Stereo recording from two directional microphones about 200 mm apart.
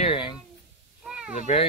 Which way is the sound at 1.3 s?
35° left (ahead or behind).